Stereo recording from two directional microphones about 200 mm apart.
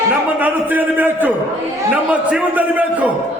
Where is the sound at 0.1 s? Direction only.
10° right (ahead or behind).